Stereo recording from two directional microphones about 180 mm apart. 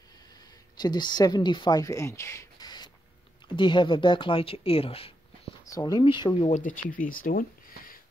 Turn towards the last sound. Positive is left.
turn(degrees=50)  # may be behind; listen again after turning